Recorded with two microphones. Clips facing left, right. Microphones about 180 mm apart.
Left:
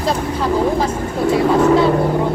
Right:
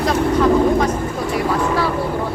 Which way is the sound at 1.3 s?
25° left (ahead or behind).